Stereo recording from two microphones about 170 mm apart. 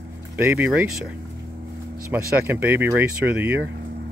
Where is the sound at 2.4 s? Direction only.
10° right (ahead or behind).